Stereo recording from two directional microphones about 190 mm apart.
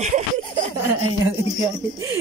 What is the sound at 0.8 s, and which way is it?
Speech, 15° right (ahead or behind).